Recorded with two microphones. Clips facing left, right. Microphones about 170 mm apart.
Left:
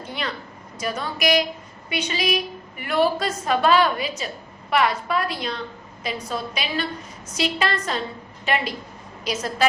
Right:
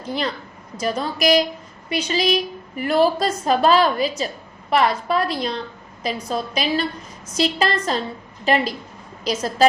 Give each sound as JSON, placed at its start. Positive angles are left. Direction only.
{"t": 0.8, "sound": "a woman's voice", "side_deg": -35}